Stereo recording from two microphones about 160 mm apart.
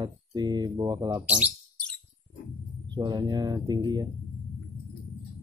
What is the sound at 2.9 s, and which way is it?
Speech, 25° right (ahead or behind).